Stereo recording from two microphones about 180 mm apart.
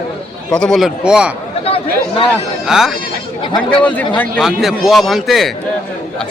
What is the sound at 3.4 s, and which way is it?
Speech, 30° left (ahead or behind).